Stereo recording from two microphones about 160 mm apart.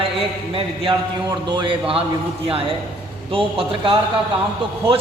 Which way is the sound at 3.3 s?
35° right (ahead or behind).